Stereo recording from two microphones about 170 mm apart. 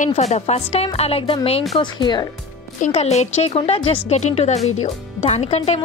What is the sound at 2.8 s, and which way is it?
Speech, 40° left (ahead or behind).